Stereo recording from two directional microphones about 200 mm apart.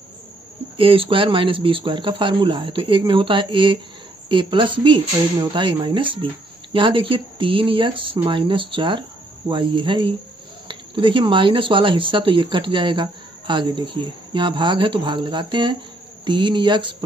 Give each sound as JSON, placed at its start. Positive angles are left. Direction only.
{"t": 0.7, "sound": "speech", "side_deg": -25}